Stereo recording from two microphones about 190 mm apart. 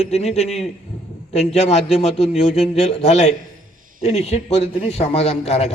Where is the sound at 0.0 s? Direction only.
35° left (ahead or behind).